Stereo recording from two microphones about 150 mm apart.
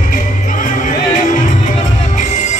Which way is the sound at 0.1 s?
60° left (ahead or behind).